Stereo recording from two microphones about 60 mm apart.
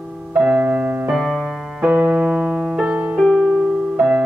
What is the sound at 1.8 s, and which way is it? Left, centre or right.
Piano, right.